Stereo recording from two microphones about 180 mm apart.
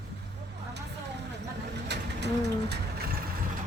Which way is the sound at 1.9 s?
70° right (ahead or behind).